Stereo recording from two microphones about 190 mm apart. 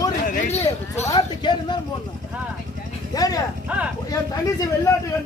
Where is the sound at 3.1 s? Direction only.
20° left (ahead or behind).